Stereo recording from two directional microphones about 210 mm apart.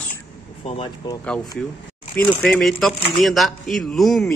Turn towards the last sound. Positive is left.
turn(degrees=0)  # may be behind; listen again after turning